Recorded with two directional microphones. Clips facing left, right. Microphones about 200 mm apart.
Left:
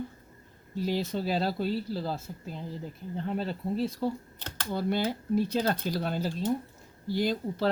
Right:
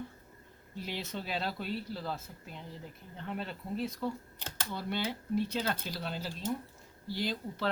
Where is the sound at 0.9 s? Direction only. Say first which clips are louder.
Left 9 dB; 40° left (ahead or behind).